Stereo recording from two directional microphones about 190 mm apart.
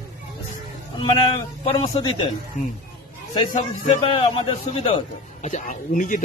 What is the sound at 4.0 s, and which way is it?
A man's voice, 30° left (ahead or behind).